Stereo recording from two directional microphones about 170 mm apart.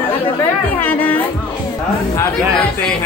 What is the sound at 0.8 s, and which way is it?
Music, 10° left (ahead or behind).